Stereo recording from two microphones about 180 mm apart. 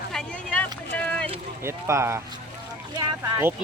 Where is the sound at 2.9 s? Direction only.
15° right (ahead or behind).